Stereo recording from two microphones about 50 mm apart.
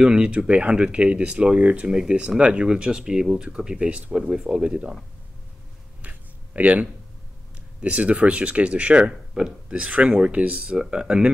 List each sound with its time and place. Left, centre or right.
0.0 s speech: centre
6.0 s a sound: right
7.8 s speech: right